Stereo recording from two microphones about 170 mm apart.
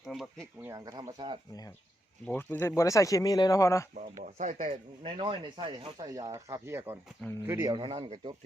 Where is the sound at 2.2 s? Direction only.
10° left (ahead or behind).